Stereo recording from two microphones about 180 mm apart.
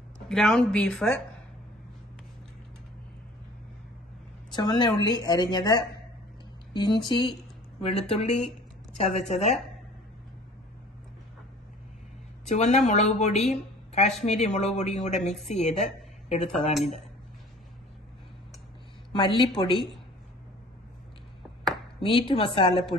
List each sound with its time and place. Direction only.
0.3 s speech: 5° left (ahead or behind)
4.6 s a woman's voice: 25° left (ahead or behind)
12.4 s a woman's voice: 40° left (ahead or behind)
19.1 s a woman's voice: 25° left (ahead or behind)
22.0 s a woman's voice: 30° left (ahead or behind)